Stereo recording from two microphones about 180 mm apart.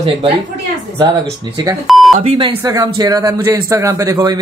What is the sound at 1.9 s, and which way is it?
Speech, centre (ahead or behind).